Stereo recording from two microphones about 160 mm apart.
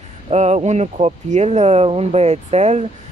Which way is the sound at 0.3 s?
40° right (ahead or behind).